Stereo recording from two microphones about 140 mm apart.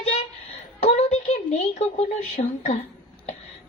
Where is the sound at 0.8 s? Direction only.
50° left (ahead or behind).